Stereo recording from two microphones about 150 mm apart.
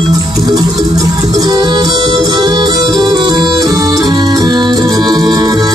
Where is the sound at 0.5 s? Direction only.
25° right (ahead or behind).